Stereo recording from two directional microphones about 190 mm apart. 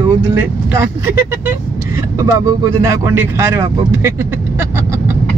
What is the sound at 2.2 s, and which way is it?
Speech, 15° right (ahead or behind).